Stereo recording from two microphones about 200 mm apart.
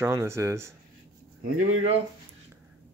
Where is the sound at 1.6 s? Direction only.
35° right (ahead or behind).